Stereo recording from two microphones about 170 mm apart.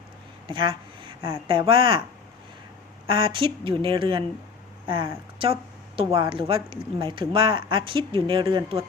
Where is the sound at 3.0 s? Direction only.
30° right (ahead or behind).